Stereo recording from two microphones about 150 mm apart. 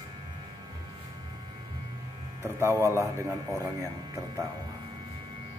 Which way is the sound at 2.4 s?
20° right (ahead or behind).